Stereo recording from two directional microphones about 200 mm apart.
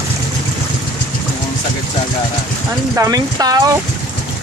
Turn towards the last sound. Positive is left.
turn(degrees=-20)  # may be behind; listen again after turning